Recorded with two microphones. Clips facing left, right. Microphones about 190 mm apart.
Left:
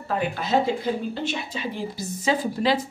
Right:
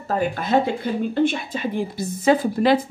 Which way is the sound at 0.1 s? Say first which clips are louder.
Right 3 dB; 45° right (ahead or behind).